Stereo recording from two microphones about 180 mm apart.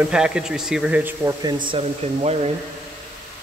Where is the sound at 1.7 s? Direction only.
35° right (ahead or behind).